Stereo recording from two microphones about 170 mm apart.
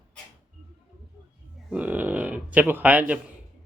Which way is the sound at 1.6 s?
10° right (ahead or behind).